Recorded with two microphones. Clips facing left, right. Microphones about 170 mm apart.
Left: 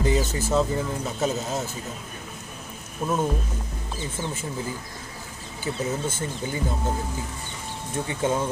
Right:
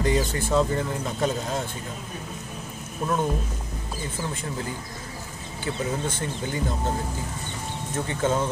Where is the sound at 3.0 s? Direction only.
5° left (ahead or behind).